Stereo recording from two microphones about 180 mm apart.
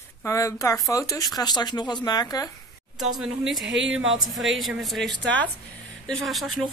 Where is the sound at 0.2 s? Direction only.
15° left (ahead or behind).